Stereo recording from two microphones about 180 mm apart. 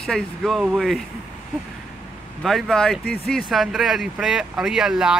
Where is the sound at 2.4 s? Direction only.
Centre (ahead or behind).